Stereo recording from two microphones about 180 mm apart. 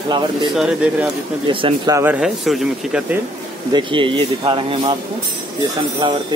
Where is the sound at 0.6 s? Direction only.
5° right (ahead or behind).